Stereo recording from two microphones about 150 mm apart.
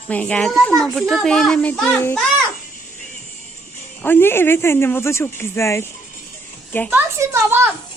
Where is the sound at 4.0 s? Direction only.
15° left (ahead or behind).